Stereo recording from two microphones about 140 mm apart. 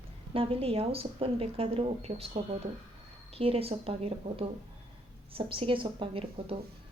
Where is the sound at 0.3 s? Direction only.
40° right (ahead or behind).